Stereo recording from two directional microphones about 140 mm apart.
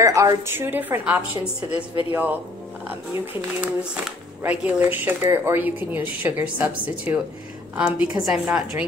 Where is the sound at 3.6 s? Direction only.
10° right (ahead or behind).